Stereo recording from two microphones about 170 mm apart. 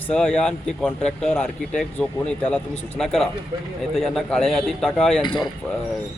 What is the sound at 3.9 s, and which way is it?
A man's voice, centre (ahead or behind).